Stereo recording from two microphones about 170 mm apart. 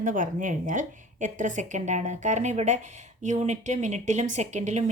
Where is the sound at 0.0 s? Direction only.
50° right (ahead or behind).